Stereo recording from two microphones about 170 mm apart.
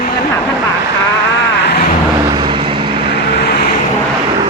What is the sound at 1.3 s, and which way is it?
Vehicle, 90° left.